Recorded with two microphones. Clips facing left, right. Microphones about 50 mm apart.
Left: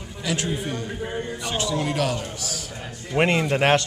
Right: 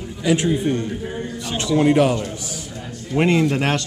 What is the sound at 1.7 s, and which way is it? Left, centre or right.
Speech, right.